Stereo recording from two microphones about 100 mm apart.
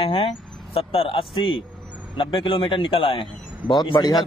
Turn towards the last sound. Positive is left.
turn(degrees=45)  # may be behind; listen again after turning